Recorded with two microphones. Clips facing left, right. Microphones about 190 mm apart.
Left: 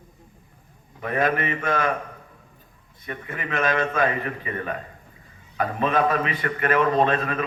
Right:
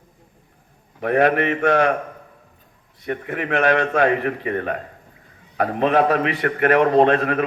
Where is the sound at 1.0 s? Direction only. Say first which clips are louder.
Right 6 dB; 65° right (ahead or behind).